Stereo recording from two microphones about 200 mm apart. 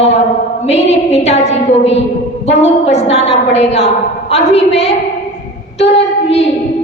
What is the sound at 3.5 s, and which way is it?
A woman's voice, 30° left (ahead or behind).